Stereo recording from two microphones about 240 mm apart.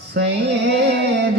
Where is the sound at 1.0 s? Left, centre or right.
Right.